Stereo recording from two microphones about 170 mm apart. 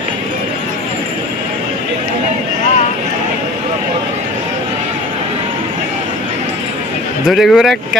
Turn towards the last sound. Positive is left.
turn(degrees=0)  # may be behind; listen again after turning